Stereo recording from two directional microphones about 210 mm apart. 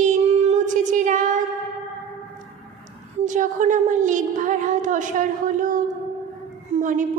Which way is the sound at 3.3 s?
35° right (ahead or behind).